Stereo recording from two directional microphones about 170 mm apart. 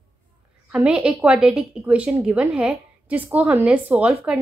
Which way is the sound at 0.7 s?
5° right (ahead or behind).